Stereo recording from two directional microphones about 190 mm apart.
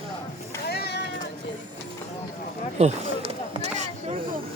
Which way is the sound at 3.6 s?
40° right (ahead or behind).